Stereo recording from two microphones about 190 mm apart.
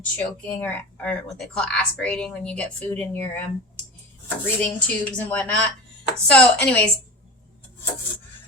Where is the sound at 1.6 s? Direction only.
5° left (ahead or behind).